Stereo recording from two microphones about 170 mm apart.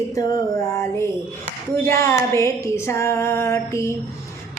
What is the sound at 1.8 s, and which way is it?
Music, 15° left (ahead or behind).